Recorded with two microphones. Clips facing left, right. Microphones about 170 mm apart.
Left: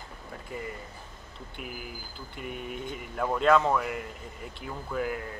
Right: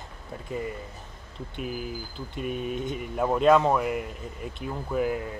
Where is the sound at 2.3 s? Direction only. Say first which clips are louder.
Right 7 dB; 20° right (ahead or behind).